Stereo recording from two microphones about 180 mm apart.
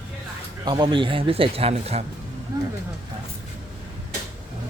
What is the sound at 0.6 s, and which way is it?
A man's voice, 25° right (ahead or behind).